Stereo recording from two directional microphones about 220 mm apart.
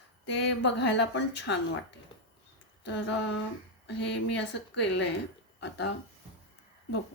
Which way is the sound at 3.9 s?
55° left (ahead or behind).